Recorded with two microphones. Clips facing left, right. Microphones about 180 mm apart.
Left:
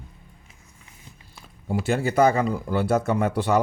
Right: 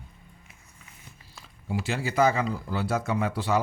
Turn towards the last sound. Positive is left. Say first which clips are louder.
# left 5 dB
turn(degrees=55)  # may be behind; listen again after turning